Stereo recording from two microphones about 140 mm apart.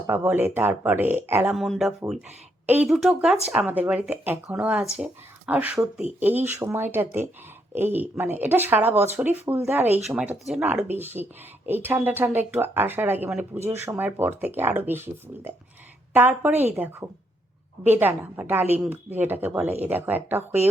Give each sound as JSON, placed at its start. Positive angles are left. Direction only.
{"t": 0.1, "sound": "speech", "side_deg": -15}
{"t": 1.5, "sound": "speech", "side_deg": 0}
{"t": 2.6, "sound": "speech", "side_deg": -10}